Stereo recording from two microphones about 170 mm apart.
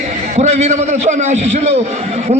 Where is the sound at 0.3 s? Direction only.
40° right (ahead or behind).